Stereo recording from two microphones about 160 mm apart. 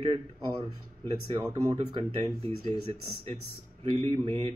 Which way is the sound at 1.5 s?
20° right (ahead or behind).